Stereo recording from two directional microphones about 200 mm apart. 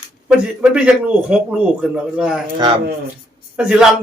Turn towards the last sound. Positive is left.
turn(degrees=-5)  # may be behind; listen again after turning